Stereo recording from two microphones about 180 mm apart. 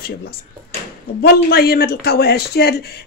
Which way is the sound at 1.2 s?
60° left (ahead or behind).